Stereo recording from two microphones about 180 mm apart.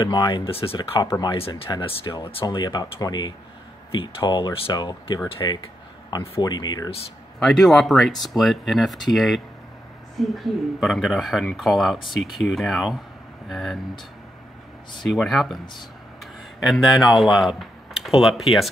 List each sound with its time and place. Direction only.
0.0 s speech: 20° left (ahead or behind)
0.7 s speech: 20° left (ahead or behind)
7.3 s speech: centre (ahead or behind)
15.0 s speech: centre (ahead or behind)
16.6 s speech: centre (ahead or behind)